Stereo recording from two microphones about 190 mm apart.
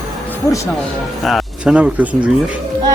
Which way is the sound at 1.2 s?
Centre (ahead or behind).